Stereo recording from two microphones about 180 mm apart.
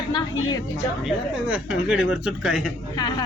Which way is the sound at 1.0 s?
5° right (ahead or behind).